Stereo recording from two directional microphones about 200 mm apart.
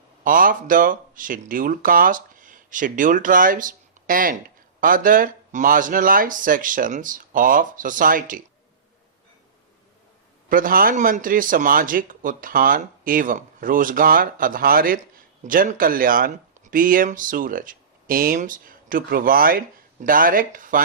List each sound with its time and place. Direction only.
0.3 s speech: 45° right (ahead or behind)
10.5 s speech: 45° right (ahead or behind)